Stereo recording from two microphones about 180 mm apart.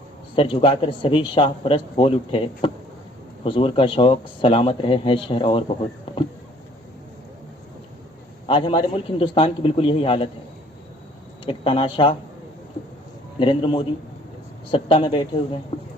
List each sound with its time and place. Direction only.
0.3 s speech: 30° left (ahead or behind)
6.1 s a sound: 30° left (ahead or behind)
8.4 s speech: 30° left (ahead or behind)
11.4 s speech: 30° left (ahead or behind)
13.4 s speech: 30° left (ahead or behind)